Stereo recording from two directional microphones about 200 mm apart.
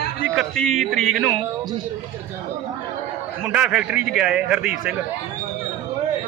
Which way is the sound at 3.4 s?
5° right (ahead or behind).